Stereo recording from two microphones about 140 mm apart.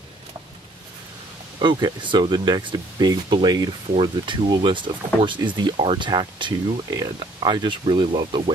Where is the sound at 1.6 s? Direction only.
35° right (ahead or behind).